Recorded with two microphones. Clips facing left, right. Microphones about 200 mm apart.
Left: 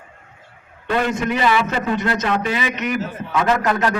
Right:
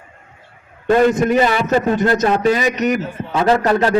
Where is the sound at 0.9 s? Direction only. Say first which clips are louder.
Right 7 dB; 45° right (ahead or behind).